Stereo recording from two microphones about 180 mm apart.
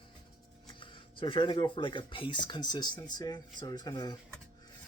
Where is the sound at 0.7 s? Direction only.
30° left (ahead or behind).